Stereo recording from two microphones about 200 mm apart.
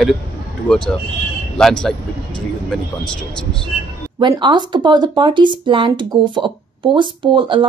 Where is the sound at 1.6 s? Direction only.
5° left (ahead or behind).